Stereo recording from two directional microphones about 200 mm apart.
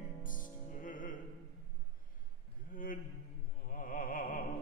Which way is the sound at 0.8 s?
45° left (ahead or behind).